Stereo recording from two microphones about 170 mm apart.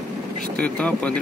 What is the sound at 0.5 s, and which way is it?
Speech, 10° left (ahead or behind).